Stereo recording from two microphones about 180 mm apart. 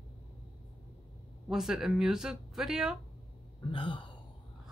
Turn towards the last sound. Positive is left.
turn(degrees=25)  # may be behind; listen again after turning